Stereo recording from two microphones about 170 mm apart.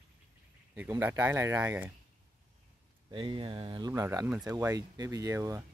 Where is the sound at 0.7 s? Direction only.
15° right (ahead or behind).